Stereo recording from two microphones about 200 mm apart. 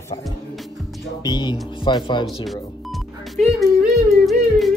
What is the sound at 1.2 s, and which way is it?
Speech, 20° left (ahead or behind).